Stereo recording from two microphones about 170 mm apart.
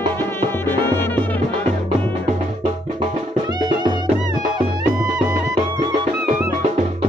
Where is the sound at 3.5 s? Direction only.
25° right (ahead or behind).